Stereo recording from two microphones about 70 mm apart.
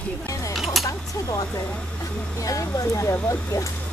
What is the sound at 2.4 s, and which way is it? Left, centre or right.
Speech, left.